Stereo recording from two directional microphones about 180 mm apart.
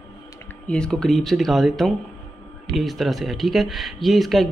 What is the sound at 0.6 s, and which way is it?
Speech, 5° left (ahead or behind).